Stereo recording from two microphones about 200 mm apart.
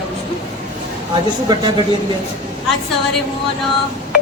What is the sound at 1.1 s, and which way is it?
Speech, 20° right (ahead or behind).